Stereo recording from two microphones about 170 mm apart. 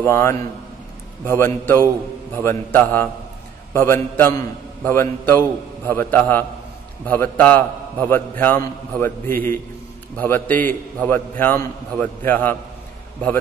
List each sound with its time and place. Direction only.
0.0 s a man's voice: 15° left (ahead or behind)